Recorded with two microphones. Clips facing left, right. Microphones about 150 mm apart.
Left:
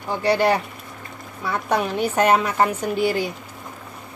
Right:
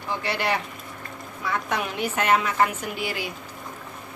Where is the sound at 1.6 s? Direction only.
35° left (ahead or behind).